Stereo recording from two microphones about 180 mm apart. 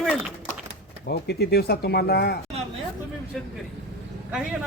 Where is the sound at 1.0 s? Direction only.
65° left (ahead or behind).